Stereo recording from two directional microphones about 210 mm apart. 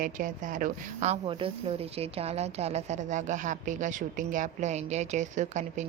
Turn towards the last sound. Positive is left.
turn(degrees=-35)  # may be behind; listen again after turning